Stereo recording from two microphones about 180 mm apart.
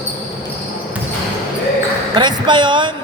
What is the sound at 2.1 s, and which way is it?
Speech, 25° right (ahead or behind).